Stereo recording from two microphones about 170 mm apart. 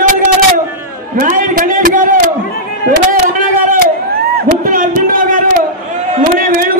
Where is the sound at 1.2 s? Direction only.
50° right (ahead or behind).